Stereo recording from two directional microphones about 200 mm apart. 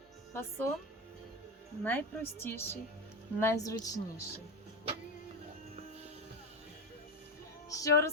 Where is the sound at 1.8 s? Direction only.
10° left (ahead or behind).